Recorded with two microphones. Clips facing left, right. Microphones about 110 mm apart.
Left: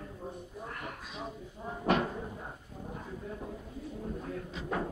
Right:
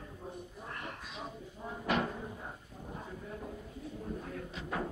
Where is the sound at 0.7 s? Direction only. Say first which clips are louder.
Left 1 dB; 10° left (ahead or behind).